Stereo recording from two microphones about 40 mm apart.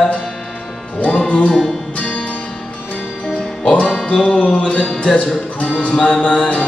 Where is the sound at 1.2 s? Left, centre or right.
Left.